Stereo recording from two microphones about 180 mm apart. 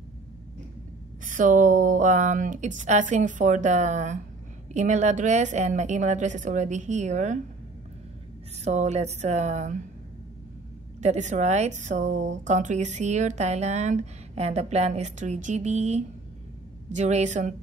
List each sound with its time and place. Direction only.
1.2 s speech: 45° right (ahead or behind)
8.6 s speech: 40° right (ahead or behind)
11.0 s speech: 40° right (ahead or behind)